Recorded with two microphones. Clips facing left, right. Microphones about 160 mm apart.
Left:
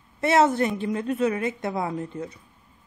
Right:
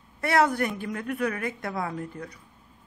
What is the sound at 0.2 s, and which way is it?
A woman's voice, 25° left (ahead or behind).